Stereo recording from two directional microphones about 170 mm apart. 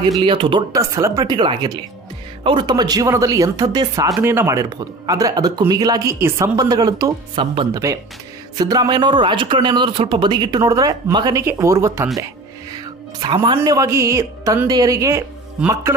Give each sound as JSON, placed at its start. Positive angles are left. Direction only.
{"t": 0.2, "sound": "speech", "side_deg": -30}
{"t": 12.7, "sound": "music", "side_deg": -25}
{"t": 13.6, "sound": "a woman's voice", "side_deg": -15}